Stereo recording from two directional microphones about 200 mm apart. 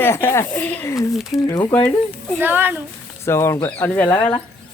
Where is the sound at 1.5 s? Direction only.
10° left (ahead or behind).